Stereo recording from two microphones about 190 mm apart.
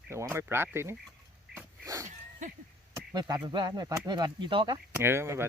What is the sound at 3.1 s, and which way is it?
Speech, 20° right (ahead or behind).